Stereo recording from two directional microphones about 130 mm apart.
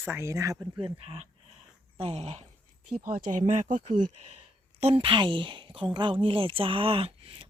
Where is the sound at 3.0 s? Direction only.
85° right.